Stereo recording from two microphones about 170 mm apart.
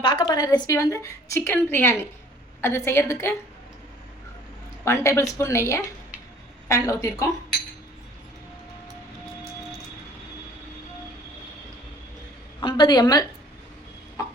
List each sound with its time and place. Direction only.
0.0 s a woman's voice: 25° left (ahead or behind)
4.9 s a woman's voice: 15° left (ahead or behind)
12.5 s a woman's voice: 25° left (ahead or behind)